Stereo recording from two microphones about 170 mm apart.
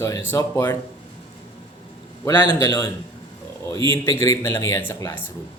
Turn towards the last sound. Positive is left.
turn(degrees=10)  # may be behind; listen again after turning